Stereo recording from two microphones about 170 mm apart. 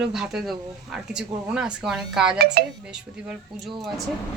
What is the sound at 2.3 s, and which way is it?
Speech, 65° right (ahead or behind).